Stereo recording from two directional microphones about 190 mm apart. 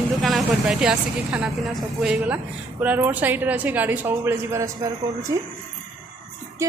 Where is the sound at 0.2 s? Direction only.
Centre (ahead or behind); by 5.5 s 20° right (ahead or behind).